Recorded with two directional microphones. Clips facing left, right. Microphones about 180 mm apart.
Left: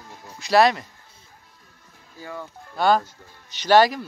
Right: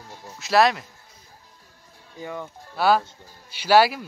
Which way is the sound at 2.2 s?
15° right (ahead or behind).